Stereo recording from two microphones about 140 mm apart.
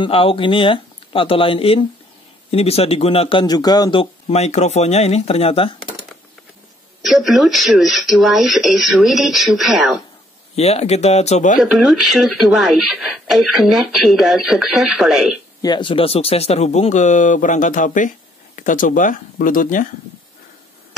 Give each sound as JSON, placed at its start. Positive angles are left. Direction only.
{"t": 0.0, "sound": "a man's voice", "side_deg": 40}
{"t": 7.0, "sound": "speech", "side_deg": 0}
{"t": 10.5, "sound": "a man's voice", "side_deg": 50}
{"t": 11.5, "sound": "speech", "side_deg": 0}
{"t": 15.6, "sound": "a man's voice", "side_deg": 35}